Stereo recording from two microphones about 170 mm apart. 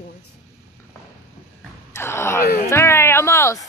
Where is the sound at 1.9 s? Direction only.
15° left (ahead or behind).